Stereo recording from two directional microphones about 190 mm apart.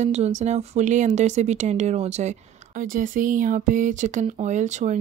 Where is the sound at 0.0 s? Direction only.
35° right (ahead or behind).